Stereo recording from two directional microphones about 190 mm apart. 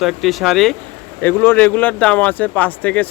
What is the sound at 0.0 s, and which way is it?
Speech, centre (ahead or behind).